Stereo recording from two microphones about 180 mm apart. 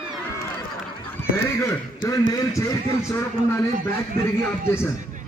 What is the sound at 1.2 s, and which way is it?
A man's voice, 15° left (ahead or behind).